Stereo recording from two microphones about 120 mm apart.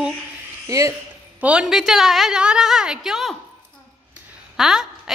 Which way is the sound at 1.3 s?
10° right (ahead or behind).